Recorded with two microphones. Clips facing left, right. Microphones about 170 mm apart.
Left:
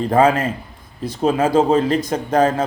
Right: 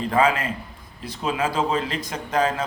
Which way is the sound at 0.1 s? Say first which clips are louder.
Left 6 dB; 45° left (ahead or behind).